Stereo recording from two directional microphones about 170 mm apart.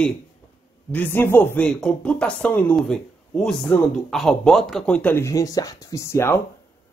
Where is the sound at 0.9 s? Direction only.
10° left (ahead or behind).